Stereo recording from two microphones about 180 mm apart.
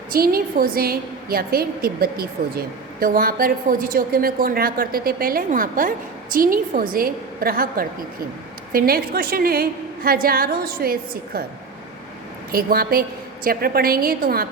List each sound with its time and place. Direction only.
0.1 s a woman's voice: 55° right (ahead or behind)
12.5 s a woman's voice: 55° right (ahead or behind)